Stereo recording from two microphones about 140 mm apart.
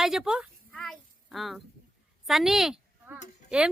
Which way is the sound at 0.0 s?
5° right (ahead or behind).